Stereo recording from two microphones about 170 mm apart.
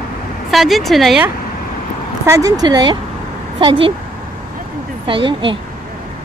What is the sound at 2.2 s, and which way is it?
Speech, 20° right (ahead or behind).